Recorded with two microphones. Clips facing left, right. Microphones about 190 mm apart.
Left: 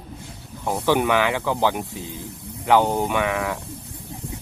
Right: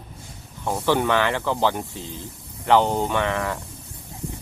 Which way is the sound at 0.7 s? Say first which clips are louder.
Left 1 dB; 15° left (ahead or behind).